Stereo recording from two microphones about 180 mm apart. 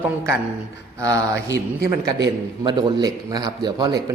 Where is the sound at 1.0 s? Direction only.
20° right (ahead or behind).